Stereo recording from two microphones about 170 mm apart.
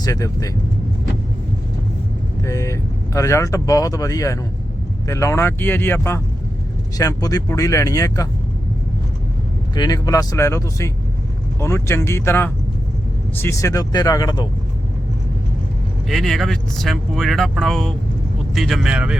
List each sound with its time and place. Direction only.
0.0 s speech: 20° left (ahead or behind)
2.4 s speech: 20° left (ahead or behind)
9.7 s speech: 25° left (ahead or behind)
16.0 s speech: centre (ahead or behind)